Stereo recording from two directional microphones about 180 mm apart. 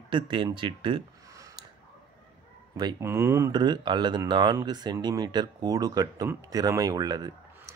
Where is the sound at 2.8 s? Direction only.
20° right (ahead or behind).